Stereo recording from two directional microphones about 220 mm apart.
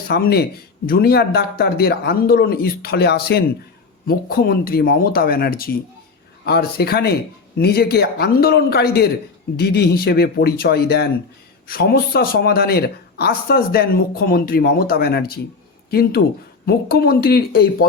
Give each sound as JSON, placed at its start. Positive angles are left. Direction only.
{"t": 0.1, "sound": "speech", "side_deg": 45}